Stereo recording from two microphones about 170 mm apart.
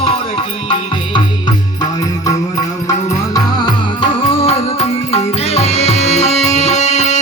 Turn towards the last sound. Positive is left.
turn(degrees=45)  # may be behind; listen again after turning